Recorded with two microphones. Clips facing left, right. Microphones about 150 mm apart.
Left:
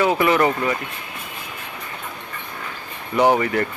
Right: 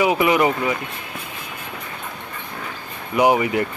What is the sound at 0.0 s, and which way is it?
Speech, 15° right (ahead or behind).